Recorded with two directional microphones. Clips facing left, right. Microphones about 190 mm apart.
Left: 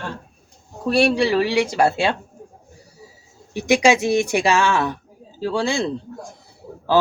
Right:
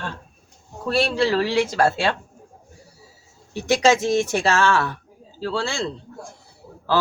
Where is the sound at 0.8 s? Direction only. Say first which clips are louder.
Left 3 dB; 15° left (ahead or behind).